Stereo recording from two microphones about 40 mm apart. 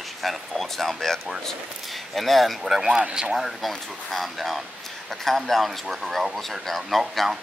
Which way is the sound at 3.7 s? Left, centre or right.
Centre.